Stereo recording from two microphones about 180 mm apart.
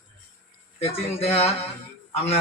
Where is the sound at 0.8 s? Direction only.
35° left (ahead or behind).